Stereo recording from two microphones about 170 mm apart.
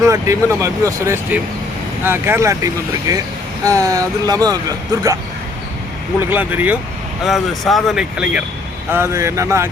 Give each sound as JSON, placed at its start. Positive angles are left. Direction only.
{"t": 0.0, "sound": "speech", "side_deg": -15}
{"t": 6.3, "sound": "speech", "side_deg": -10}
{"t": 8.9, "sound": "speech", "side_deg": -15}